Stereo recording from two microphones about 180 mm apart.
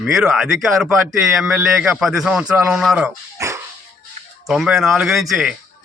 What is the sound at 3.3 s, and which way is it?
Dog, 15° right (ahead or behind).